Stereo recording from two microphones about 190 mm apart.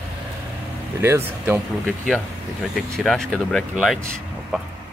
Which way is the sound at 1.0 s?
10° right (ahead or behind).